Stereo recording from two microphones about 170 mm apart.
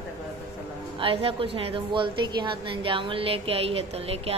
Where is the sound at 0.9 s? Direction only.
35° right (ahead or behind).